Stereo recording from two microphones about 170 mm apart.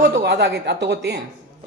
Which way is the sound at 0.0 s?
85° right.